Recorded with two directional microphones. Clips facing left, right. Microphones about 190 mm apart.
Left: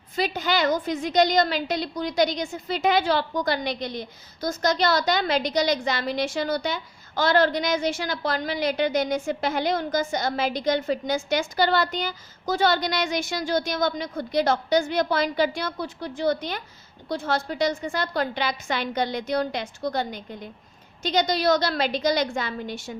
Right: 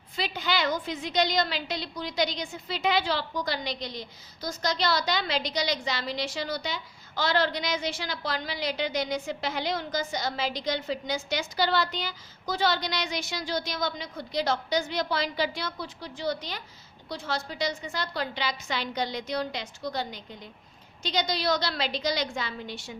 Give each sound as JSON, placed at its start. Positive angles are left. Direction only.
{"t": 0.2, "sound": "a woman's voice", "side_deg": 45}